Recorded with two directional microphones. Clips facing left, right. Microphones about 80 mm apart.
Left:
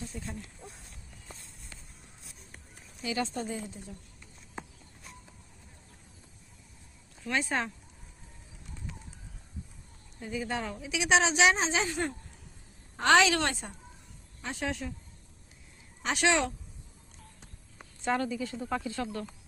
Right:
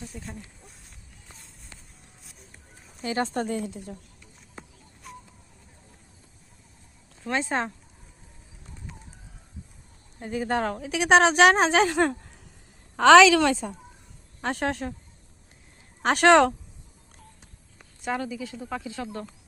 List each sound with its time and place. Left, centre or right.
0.1 s speech: centre
3.0 s speech: right
3.3 s speech: right
7.3 s speech: right
10.2 s a woman's voice: right
14.4 s a woman's voice: right
16.0 s speech: right
18.0 s speech: centre
18.9 s speech: centre